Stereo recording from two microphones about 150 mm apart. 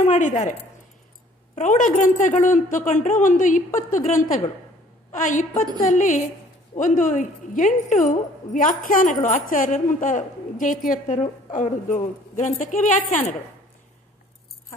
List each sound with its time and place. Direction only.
0.0 s a woman's voice: 50° left (ahead or behind)